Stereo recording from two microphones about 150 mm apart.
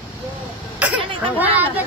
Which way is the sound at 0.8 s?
10° right (ahead or behind).